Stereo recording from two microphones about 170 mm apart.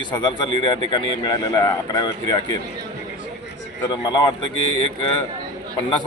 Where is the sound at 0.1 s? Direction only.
25° left (ahead or behind).